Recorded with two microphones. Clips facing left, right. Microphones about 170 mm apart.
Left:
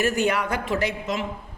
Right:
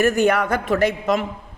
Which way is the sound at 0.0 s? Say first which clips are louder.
Right 5 dB; 55° right (ahead or behind).